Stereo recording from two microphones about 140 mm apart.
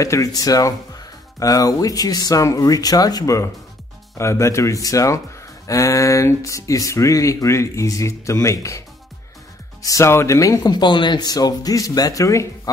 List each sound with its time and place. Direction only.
0.0 s speech: 25° left (ahead or behind)